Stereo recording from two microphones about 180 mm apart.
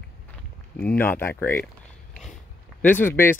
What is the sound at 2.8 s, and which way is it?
Speech, 10° left (ahead or behind).